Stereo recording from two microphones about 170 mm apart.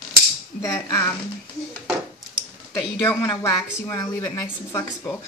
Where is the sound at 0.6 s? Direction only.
15° left (ahead or behind).